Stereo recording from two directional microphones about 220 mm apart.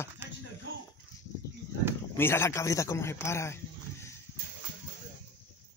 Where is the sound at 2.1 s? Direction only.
10° left (ahead or behind).